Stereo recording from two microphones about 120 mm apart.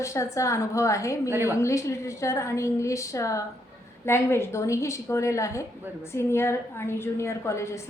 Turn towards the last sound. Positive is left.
turn(degrees=25)  # may be behind; listen again after turning